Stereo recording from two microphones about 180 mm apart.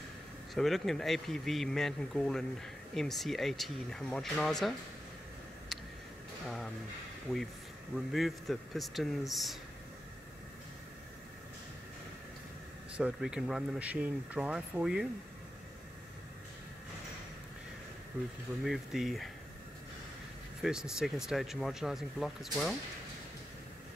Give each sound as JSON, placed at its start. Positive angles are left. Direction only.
{"t": 0.6, "sound": "speech", "side_deg": 0}
{"t": 7.3, "sound": "speech", "side_deg": 0}
{"t": 12.9, "sound": "speech", "side_deg": -5}
{"t": 18.6, "sound": "speech", "side_deg": 0}
{"t": 20.6, "sound": "speech", "side_deg": -5}